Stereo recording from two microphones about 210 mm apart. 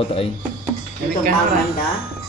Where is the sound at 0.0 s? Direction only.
25° left (ahead or behind).